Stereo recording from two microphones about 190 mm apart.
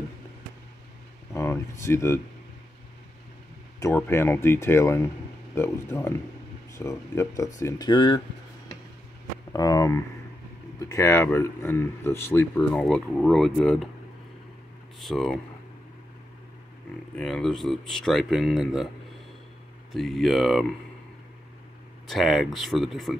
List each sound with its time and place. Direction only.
1.3 s a sound: 15° left (ahead or behind)
3.8 s speech: 15° left (ahead or behind)
9.5 s speech: 20° left (ahead or behind); by 13.7 s centre (ahead or behind)
15.0 s speech: centre (ahead or behind)
17.1 s speech: 5° left (ahead or behind)
19.9 s speech: centre (ahead or behind)
22.0 s speech: centre (ahead or behind)